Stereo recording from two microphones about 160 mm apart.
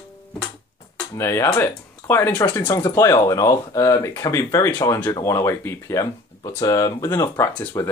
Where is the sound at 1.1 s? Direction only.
15° left (ahead or behind).